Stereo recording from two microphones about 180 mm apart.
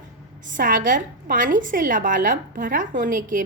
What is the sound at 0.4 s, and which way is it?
A woman's voice, 50° right (ahead or behind).